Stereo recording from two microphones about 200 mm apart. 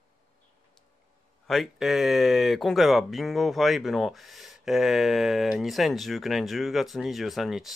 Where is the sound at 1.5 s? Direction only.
Centre (ahead or behind).